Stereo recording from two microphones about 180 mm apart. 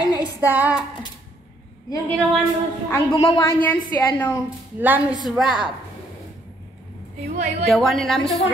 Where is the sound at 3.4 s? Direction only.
10° left (ahead or behind).